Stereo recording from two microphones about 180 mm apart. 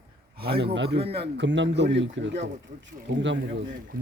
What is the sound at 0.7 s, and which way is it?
A man's voice, 80° right.